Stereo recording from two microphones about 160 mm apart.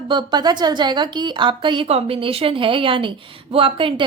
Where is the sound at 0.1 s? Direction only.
30° right (ahead or behind).